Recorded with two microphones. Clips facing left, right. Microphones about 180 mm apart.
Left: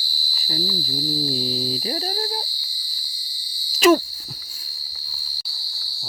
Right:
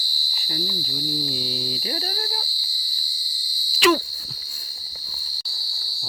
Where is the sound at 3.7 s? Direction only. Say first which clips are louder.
Left 4 dB; 45° left (ahead or behind).